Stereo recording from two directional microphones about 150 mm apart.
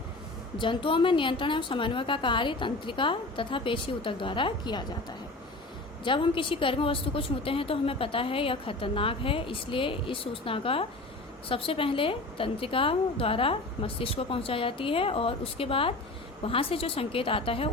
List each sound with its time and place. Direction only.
0.6 s a woman's voice: 35° left (ahead or behind)
6.1 s a woman's voice: 35° left (ahead or behind)